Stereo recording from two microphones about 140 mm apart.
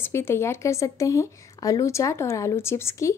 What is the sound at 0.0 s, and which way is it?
A woman's voice, 15° left (ahead or behind).